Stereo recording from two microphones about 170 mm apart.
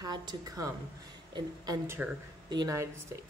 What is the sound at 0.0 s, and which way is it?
Speech, 20° right (ahead or behind).